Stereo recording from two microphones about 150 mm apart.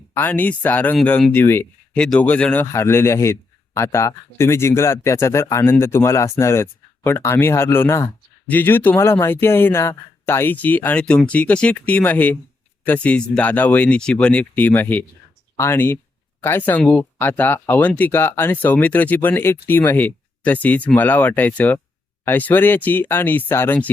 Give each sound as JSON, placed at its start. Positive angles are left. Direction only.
{"t": 0.1, "sound": "speech", "side_deg": 10}